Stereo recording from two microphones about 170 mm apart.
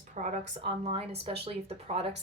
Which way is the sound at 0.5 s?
35° right (ahead or behind).